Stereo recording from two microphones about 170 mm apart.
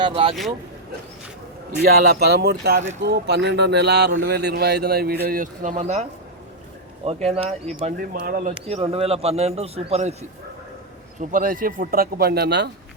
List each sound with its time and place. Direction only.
0.0 s speech: 35° right (ahead or behind)
1.8 s speech: 65° right (ahead or behind)
3.0 s speech: 85° right; by 5.1 s 65° right (ahead or behind)
5.2 s speech: 55° right (ahead or behind); by 7.9 s 35° right (ahead or behind)
7.9 s speech: 55° right (ahead or behind)
8.6 s speech: 35° right (ahead or behind)
11.2 s speech: 50° right (ahead or behind); by 12.7 s 75° right (ahead or behind)